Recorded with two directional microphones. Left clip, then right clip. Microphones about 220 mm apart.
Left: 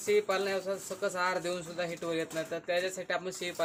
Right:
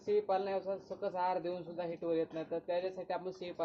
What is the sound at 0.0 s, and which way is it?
Speech, 25° left (ahead or behind).